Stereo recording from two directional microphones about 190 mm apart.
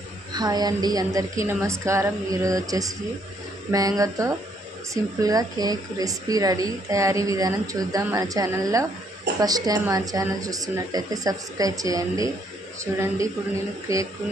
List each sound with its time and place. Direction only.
0.3 s a woman's voice: 20° right (ahead or behind)